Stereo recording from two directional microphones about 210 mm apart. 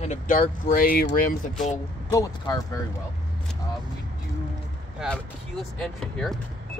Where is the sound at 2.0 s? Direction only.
20° left (ahead or behind).